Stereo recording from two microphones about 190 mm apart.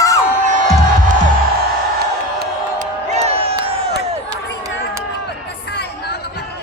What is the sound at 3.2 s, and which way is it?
Crowd, 30° right (ahead or behind).